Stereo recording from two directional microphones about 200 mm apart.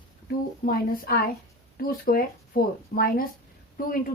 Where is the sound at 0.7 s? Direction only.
45° left (ahead or behind).